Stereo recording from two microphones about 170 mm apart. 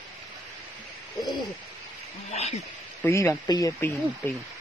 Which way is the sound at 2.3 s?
40° left (ahead or behind).